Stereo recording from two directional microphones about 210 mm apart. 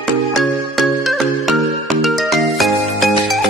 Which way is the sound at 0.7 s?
Centre (ahead or behind).